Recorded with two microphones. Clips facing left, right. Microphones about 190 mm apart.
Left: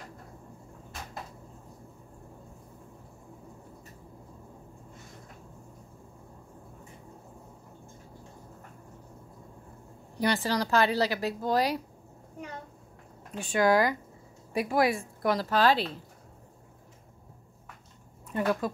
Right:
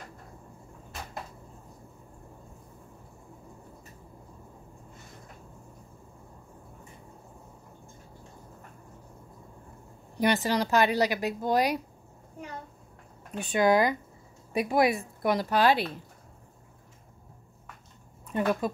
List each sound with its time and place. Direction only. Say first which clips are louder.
10.2 s speech: right 2 dB; 20° right (ahead or behind)
13.3 s speech: right 1 dB; 20° right (ahead or behind)
18.3 s speech: right 1 dB; 20° right (ahead or behind)